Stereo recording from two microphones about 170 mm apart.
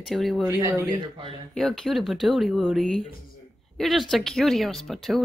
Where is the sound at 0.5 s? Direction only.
20° right (ahead or behind).